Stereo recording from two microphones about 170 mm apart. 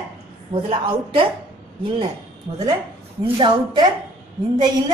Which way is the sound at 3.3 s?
25° right (ahead or behind).